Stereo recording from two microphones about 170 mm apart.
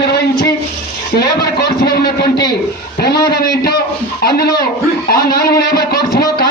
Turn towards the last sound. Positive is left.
turn(degrees=65)  # may be behind; listen again after turning